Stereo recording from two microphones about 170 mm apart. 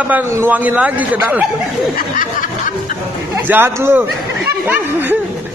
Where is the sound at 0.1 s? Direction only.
10° right (ahead or behind).